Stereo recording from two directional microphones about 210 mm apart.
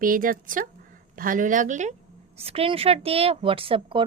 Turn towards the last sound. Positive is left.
turn(degrees=-25)  # may be behind; listen again after turning